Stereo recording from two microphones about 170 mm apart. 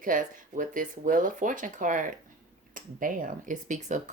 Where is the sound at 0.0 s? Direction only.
50° right (ahead or behind).